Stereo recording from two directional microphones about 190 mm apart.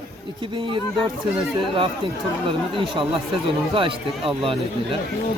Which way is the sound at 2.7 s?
30° right (ahead or behind).